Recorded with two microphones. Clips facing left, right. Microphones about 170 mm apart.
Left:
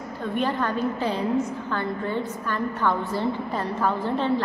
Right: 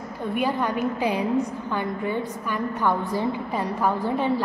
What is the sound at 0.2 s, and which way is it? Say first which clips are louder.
A woman's voice: right 1 dB; 10° right (ahead or behind).